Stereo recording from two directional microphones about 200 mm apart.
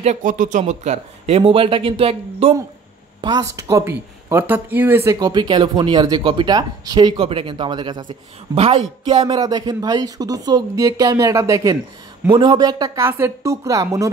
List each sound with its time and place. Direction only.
0.0 s speech: 40° right (ahead or behind); by 14.1 s 15° right (ahead or behind)